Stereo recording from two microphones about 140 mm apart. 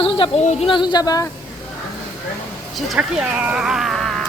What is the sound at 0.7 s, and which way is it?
Speech, 35° left (ahead or behind).